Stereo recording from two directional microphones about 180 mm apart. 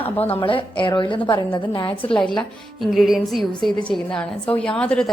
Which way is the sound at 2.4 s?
Centre (ahead or behind).